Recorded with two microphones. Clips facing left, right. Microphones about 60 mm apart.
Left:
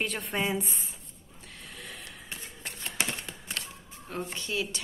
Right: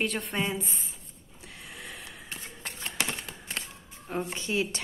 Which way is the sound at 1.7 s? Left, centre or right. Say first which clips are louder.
Right 1 dB; centre.